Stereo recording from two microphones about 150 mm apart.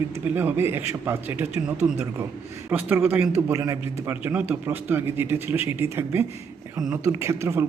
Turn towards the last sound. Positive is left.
turn(degrees=-20)  # may be behind; listen again after turning